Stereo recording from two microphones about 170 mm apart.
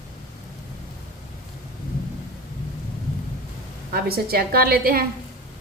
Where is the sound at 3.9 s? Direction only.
65° right (ahead or behind).